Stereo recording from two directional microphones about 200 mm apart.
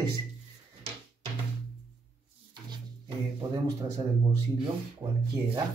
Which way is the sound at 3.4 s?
15° right (ahead or behind).